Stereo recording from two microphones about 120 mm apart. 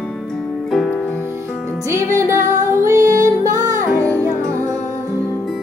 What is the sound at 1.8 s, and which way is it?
Music, 25° right (ahead or behind).